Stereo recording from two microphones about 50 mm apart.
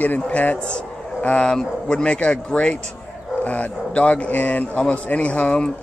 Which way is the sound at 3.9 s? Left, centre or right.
Left.